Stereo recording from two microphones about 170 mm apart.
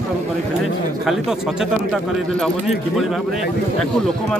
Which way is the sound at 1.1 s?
Centre (ahead or behind).